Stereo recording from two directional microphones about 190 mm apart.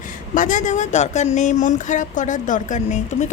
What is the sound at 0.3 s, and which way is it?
A woman's voice, 40° left (ahead or behind).